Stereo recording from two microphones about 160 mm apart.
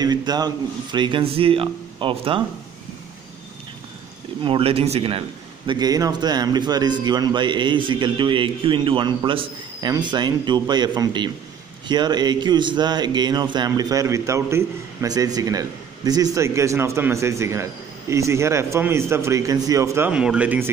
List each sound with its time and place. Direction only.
0.0 s a man's voice: 25° right (ahead or behind)
4.4 s speech: 35° right (ahead or behind)
5.7 s a man's voice: 25° right (ahead or behind)
20.1 s a man's voice: 5° right (ahead or behind)